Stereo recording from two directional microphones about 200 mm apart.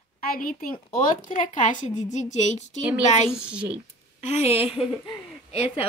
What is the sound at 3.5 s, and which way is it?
Speech, 5° right (ahead or behind).